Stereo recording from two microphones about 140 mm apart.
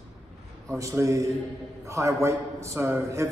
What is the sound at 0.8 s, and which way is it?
A man's voice, 20° right (ahead or behind).